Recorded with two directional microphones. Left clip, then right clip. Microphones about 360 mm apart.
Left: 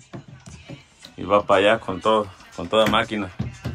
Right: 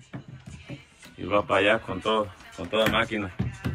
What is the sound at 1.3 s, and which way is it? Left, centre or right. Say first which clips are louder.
Speech: left 5 dB; centre.